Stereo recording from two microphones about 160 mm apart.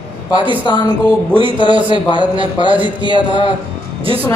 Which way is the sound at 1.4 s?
30° right (ahead or behind).